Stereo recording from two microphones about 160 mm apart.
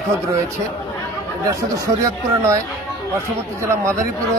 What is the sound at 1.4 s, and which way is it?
A man's voice, 20° right (ahead or behind).